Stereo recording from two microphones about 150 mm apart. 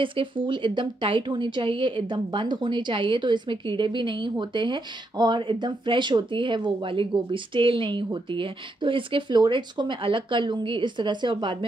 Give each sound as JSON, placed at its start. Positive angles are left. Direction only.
{"t": 0.0, "sound": "a woman's voice", "side_deg": -35}